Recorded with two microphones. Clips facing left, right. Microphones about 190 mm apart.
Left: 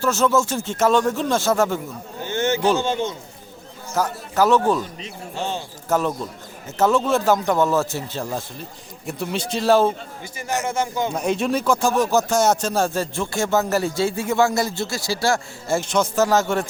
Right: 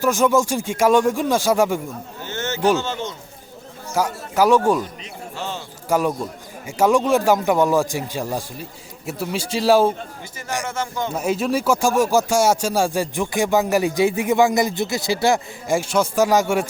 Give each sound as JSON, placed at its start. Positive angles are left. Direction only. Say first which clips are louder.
{"t": 0.0, "sound": "speech", "louder": "right 2 dB", "side_deg": -10}
{"t": 2.2, "sound": "a sound", "louder": "left 6 dB", "side_deg": 15}
{"t": 2.7, "sound": "a man's voice", "louder": "left 2 dB", "side_deg": 15}
{"t": 3.9, "sound": "speech", "louder": "right 1 dB", "side_deg": -10}
{"t": 5.4, "sound": "speech", "louder": "left 3 dB", "side_deg": 20}
{"t": 5.9, "sound": "speech", "louder": "right 2 dB", "side_deg": -10}
{"t": 10.7, "sound": "a man's voice", "louder": "left 3 dB", "side_deg": 10}
{"t": 11.1, "sound": "speech", "louder": "right 4 dB", "side_deg": -5}